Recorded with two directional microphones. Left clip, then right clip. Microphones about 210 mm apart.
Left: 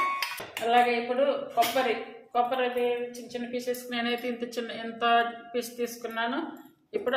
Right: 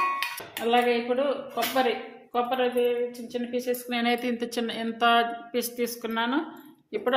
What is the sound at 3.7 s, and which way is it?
A woman's voice, 45° right (ahead or behind).